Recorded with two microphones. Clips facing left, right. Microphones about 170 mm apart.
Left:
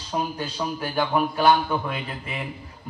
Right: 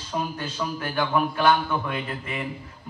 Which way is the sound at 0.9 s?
35° left (ahead or behind).